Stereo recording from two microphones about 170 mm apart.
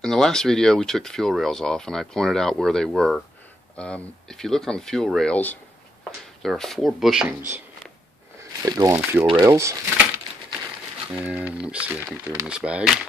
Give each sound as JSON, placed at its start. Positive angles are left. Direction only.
{"t": 0.0, "sound": "speech", "side_deg": 5}
{"t": 8.4, "sound": "a sound", "side_deg": -20}
{"t": 8.9, "sound": "speech", "side_deg": -5}
{"t": 11.1, "sound": "speech", "side_deg": -10}